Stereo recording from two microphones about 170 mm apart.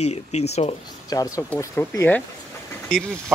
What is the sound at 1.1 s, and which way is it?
Speech, 20° left (ahead or behind).